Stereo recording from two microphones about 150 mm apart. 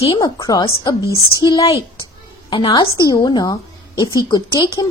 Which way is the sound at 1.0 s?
25° right (ahead or behind).